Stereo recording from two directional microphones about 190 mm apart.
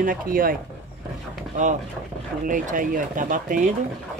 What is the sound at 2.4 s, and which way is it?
Speech, 45° right (ahead or behind).